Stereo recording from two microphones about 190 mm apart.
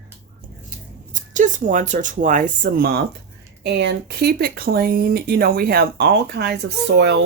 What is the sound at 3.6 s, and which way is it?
Speech, 65° right (ahead or behind).